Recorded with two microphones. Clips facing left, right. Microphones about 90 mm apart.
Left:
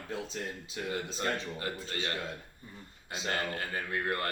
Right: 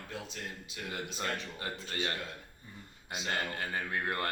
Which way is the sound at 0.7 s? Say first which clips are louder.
Left 5 dB; 30° left (ahead or behind).